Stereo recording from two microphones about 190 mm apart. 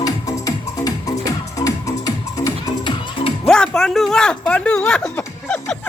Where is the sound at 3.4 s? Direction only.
5° left (ahead or behind).